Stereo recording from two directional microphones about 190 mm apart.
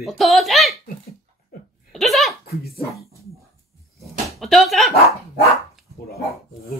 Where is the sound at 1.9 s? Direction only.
Centre (ahead or behind).